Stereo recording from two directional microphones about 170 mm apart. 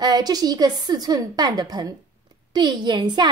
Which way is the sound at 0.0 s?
20° right (ahead or behind).